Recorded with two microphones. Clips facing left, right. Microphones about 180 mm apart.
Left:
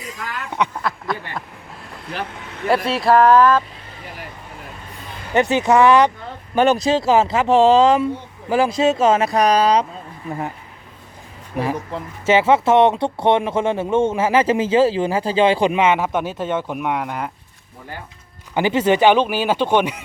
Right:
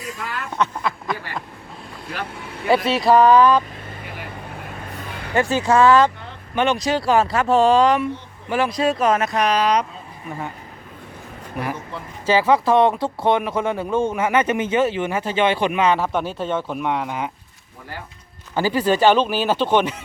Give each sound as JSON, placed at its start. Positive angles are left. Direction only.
{"t": 0.8, "sound": "duck", "side_deg": 0}
{"t": 2.6, "sound": "speech", "side_deg": 0}
{"t": 5.3, "sound": "speech", "side_deg": 20}
{"t": 6.6, "sound": "speech", "side_deg": 40}
{"t": 6.9, "sound": "speech", "side_deg": 20}
{"t": 12.2, "sound": "speech", "side_deg": 25}
{"t": 18.5, "sound": "speech", "side_deg": 20}